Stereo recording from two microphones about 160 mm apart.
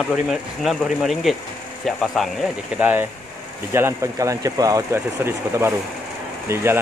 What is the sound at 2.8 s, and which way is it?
Speech, 10° right (ahead or behind).